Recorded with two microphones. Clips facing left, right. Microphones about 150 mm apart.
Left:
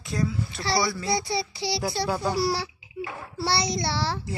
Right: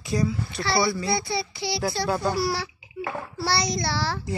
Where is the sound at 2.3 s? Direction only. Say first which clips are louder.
Even; 35° left (ahead or behind).